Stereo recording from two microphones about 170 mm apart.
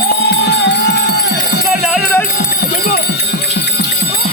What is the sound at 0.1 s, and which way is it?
Music, 80° left.